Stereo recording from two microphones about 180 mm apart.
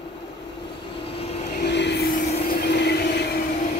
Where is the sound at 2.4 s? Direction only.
65° left (ahead or behind).